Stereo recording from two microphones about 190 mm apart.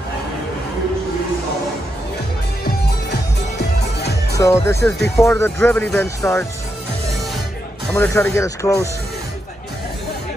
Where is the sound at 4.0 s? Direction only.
60° left (ahead or behind).